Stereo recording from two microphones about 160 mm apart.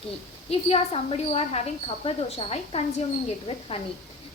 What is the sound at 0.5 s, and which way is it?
A woman's voice, 40° left (ahead or behind).